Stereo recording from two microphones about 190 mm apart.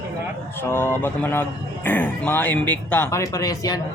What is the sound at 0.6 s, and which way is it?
Speech, 10° left (ahead or behind).